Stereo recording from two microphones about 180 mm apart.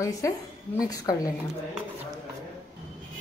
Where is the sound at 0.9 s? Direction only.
20° left (ahead or behind).